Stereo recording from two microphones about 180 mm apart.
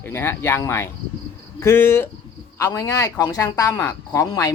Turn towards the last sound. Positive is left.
turn(degrees=15)  # may be behind; listen again after turning